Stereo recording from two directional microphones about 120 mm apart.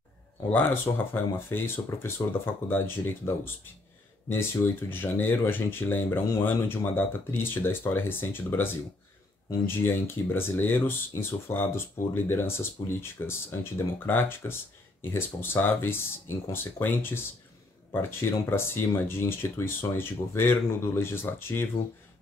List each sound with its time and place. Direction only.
0.5 s speech: 15° left (ahead or behind)
9.7 s speech: 20° left (ahead or behind)